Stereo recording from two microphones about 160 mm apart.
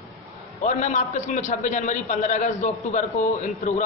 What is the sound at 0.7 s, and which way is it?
A man's voice, 50° left (ahead or behind).